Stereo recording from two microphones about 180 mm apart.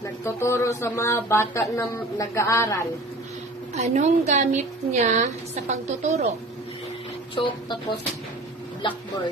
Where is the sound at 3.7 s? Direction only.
40° right (ahead or behind).